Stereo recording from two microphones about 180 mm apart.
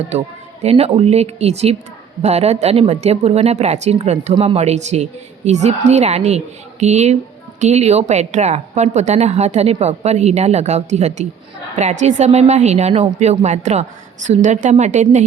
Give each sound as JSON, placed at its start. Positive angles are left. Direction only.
{"t": 0.6, "sound": "speech", "side_deg": -35}